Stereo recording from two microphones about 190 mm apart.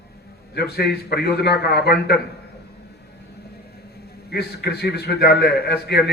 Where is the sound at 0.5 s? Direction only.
55° left (ahead or behind).